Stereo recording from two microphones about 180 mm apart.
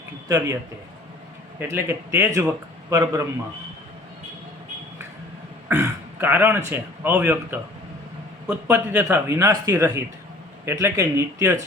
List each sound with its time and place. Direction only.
0.3 s a man's voice: 15° right (ahead or behind)
1.5 s a man's voice: 10° right (ahead or behind)
5.6 s a man's voice: 15° right (ahead or behind)